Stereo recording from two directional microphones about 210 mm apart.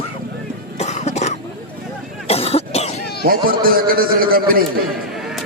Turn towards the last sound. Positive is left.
turn(degrees=-45)  # may be behind; listen again after turning